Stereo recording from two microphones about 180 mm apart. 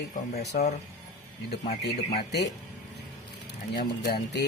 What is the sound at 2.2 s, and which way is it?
Speech, 65° left (ahead or behind).